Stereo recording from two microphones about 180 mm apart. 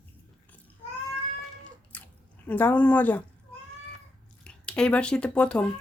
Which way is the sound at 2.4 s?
10° left (ahead or behind).